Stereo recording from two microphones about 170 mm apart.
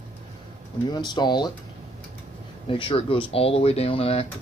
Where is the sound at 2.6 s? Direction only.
30° left (ahead or behind).